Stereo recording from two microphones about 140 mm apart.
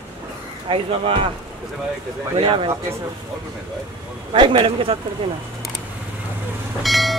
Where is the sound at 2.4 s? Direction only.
35° right (ahead or behind).